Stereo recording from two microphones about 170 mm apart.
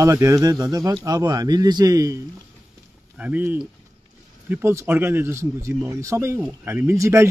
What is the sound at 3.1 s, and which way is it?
Speech, 10° right (ahead or behind).